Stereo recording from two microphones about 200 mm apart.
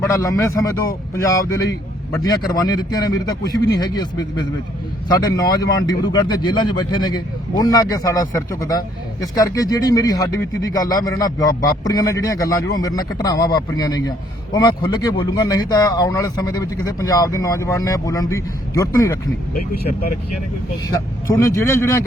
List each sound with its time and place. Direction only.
0.0 s speech: 15° left (ahead or behind)
21.3 s speech: 15° left (ahead or behind)